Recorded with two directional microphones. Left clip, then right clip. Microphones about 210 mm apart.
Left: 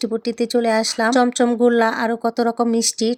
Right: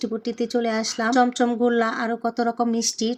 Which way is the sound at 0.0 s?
40° left (ahead or behind).